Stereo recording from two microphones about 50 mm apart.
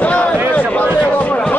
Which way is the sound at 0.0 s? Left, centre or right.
Left.